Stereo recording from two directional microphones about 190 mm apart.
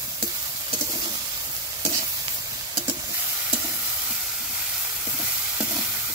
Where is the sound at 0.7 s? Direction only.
25° right (ahead or behind).